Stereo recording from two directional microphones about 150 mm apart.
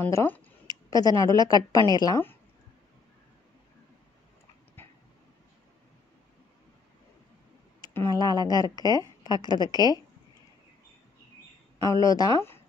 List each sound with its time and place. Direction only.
0.0 s a woman's voice: 15° left (ahead or behind)
8.1 s speech: 25° left (ahead or behind)
11.8 s speech: 20° left (ahead or behind)